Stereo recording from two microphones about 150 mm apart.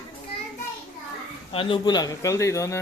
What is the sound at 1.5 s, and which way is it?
A man's voice, 35° left (ahead or behind).